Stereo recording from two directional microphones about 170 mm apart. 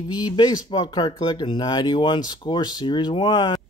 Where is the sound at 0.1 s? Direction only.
25° left (ahead or behind).